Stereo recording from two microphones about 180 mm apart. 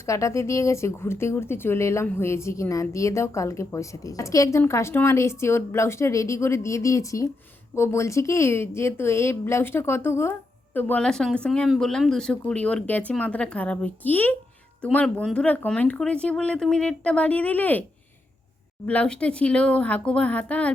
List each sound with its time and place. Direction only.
0.0 s speech: 15° left (ahead or behind)
18.9 s speech: 5° left (ahead or behind)